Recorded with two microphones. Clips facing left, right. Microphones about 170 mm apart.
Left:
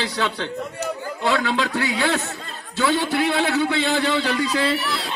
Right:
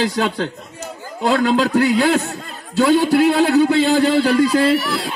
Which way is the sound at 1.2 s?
45° right (ahead or behind).